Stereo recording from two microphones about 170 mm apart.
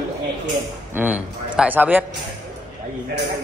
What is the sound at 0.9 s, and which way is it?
Speech, 10° right (ahead or behind).